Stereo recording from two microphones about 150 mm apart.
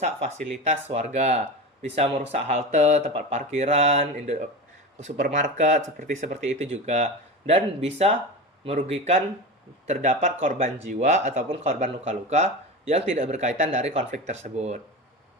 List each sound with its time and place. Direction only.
0.7 s speech: 50° right (ahead or behind)